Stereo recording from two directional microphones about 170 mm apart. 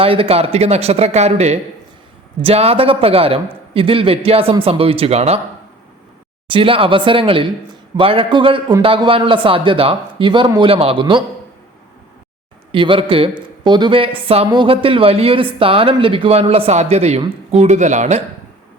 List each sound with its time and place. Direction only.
0.0 s speech: 35° right (ahead or behind)
6.5 s a man's voice: 30° right (ahead or behind)
12.7 s speech: 30° right (ahead or behind)